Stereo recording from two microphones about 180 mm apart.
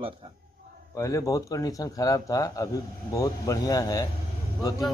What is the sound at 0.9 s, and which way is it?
A man's voice, 15° left (ahead or behind).